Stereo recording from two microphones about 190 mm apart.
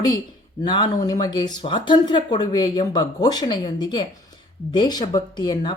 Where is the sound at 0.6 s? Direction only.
20° left (ahead or behind).